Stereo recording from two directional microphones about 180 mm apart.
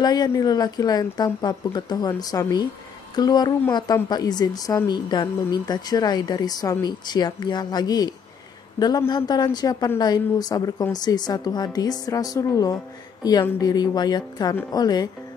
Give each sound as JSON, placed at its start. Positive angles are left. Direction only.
{"t": 0.0, "sound": "speech", "side_deg": 20}